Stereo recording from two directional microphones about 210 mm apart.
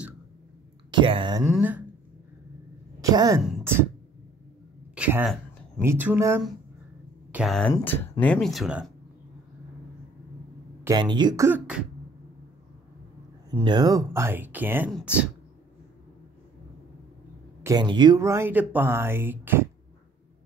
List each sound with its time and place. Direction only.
0.9 s speech: 25° right (ahead or behind)
1.5 s speech: 10° right (ahead or behind)
3.0 s a woman's voice: 15° right (ahead or behind)
4.9 s speech: 5° right (ahead or behind)
7.3 s speech: centre (ahead or behind)
10.8 s speech: 20° right (ahead or behind)
13.5 s speech: 20° right (ahead or behind)
14.9 s speech: centre (ahead or behind)
17.6 s speech: 20° right (ahead or behind)